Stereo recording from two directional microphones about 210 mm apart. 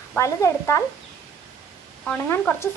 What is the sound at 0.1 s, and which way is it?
Speech, 15° left (ahead or behind).